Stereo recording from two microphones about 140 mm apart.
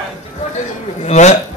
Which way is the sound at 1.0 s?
55° left (ahead or behind).